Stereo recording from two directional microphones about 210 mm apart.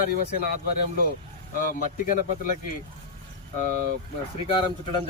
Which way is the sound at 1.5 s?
40° left (ahead or behind).